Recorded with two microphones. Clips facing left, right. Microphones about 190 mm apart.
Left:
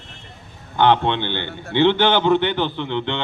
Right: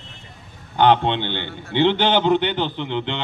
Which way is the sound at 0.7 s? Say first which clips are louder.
Even; 15° right (ahead or behind).